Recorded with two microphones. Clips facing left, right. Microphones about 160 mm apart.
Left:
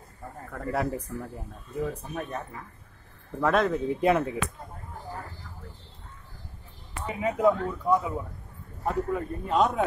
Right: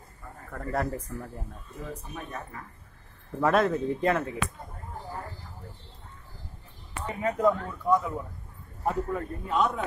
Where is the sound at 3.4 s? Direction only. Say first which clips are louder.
Even; centre (ahead or behind).